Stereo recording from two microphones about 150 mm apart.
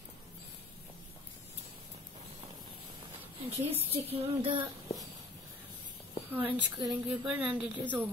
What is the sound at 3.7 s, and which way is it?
Female singing, 40° right (ahead or behind).